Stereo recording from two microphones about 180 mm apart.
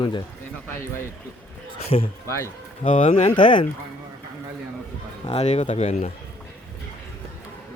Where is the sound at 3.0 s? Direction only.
35° left (ahead or behind).